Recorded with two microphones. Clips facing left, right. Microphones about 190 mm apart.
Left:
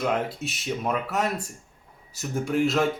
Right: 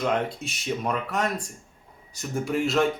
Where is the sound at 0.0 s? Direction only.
5° left (ahead or behind).